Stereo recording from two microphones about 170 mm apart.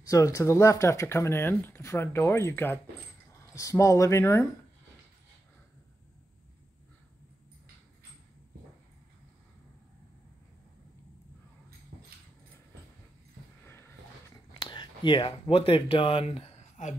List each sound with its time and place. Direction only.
0.1 s speech: 20° left (ahead or behind)
14.5 s speech: 25° left (ahead or behind)